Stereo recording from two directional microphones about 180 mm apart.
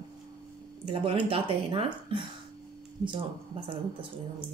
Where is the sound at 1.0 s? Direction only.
30° right (ahead or behind).